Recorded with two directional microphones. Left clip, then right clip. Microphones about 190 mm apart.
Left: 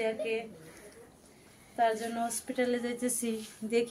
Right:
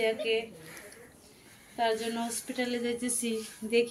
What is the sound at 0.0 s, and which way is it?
Speech, 10° left (ahead or behind).